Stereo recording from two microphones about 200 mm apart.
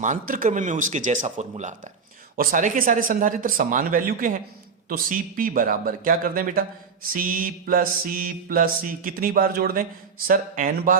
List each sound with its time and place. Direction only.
0.0 s speech: 40° right (ahead or behind)
2.3 s mantra: 45° right (ahead or behind)